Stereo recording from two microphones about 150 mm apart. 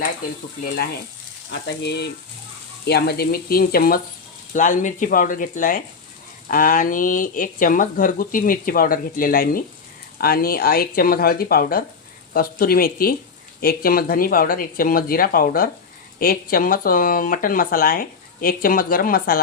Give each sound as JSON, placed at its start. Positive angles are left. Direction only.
{"t": 2.8, "sound": "speech", "side_deg": 90}
{"t": 4.5, "sound": "speech", "side_deg": 60}
{"t": 10.2, "sound": "speech", "side_deg": 85}